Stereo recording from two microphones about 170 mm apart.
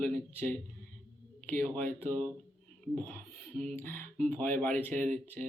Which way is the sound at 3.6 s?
10° left (ahead or behind).